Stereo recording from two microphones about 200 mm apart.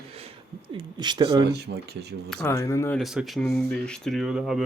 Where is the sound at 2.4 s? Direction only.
15° left (ahead or behind).